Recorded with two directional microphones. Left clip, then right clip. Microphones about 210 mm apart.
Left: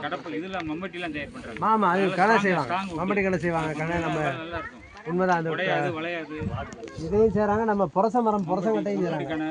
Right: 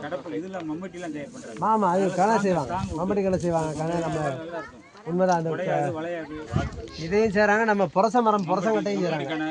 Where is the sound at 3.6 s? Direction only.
30° right (ahead or behind).